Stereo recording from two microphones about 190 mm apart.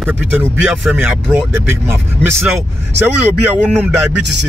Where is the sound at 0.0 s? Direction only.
10° right (ahead or behind).